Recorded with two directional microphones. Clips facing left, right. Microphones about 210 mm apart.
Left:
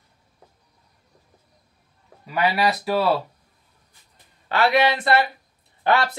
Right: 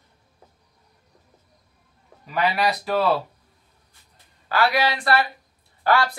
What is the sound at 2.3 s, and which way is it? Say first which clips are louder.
Speech: left 1 dB; 5° left (ahead or behind).